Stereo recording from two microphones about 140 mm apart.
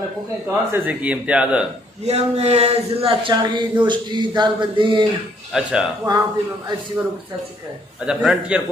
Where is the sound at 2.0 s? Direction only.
50° right (ahead or behind).